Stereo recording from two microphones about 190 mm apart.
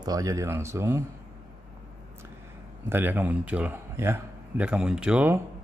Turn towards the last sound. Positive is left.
turn(degrees=-5)  # may be behind; listen again after turning